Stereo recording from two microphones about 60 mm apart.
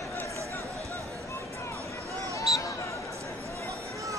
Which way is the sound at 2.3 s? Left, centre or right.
Left.